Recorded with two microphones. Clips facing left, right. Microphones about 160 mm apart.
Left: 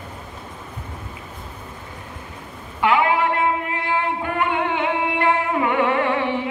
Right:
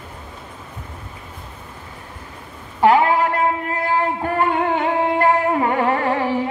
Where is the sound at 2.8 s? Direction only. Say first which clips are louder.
Right 4 dB; 40° right (ahead or behind).